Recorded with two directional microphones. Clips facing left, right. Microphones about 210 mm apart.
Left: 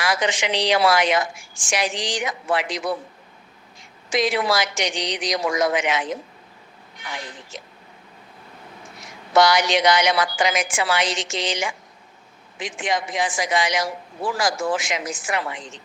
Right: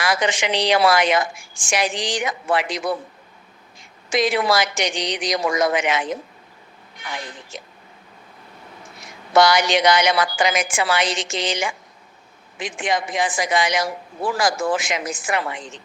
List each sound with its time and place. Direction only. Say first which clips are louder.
0.0 s a woman's voice: right 1 dB; 55° right (ahead or behind)
4.1 s a woman's voice: right 2 dB; 55° right (ahead or behind)
7.5 s a woman's voice: right 2 dB; 55° right (ahead or behind)
9.4 s a woman's voice: right 1 dB; 55° right (ahead or behind)